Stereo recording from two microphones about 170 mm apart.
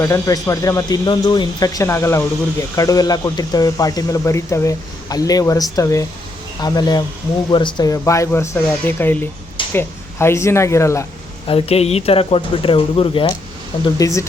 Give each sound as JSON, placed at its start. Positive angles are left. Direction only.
{"t": 0.0, "sound": "speech", "side_deg": 20}
{"t": 11.4, "sound": "speech", "side_deg": 35}
{"t": 13.8, "sound": "speech", "side_deg": 20}